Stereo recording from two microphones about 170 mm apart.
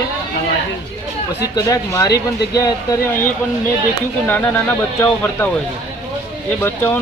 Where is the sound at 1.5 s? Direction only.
20° left (ahead or behind).